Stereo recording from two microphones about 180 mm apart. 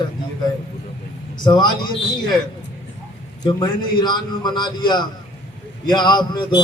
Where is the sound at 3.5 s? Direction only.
25° left (ahead or behind).